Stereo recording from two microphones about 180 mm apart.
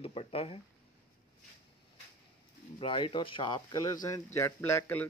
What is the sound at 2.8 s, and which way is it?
Speech, 30° left (ahead or behind).